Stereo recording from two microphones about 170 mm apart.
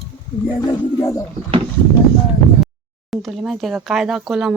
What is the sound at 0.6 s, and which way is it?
Speech, 20° left (ahead or behind).